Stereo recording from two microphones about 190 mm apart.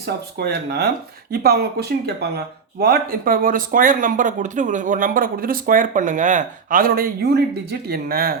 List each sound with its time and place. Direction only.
0.3 s speech: 55° right (ahead or behind)